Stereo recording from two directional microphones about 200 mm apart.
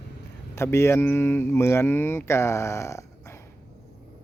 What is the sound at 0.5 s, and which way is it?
Speech, 15° left (ahead or behind).